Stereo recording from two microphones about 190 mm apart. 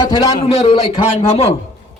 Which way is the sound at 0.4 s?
30° left (ahead or behind).